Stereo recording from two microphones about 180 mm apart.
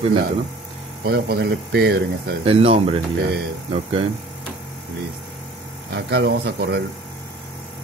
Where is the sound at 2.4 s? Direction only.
30° right (ahead or behind).